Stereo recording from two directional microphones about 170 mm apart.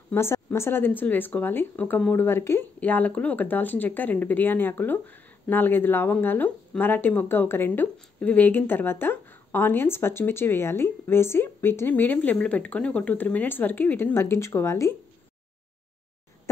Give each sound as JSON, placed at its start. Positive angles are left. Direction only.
{"t": 0.1, "sound": "speech", "side_deg": 15}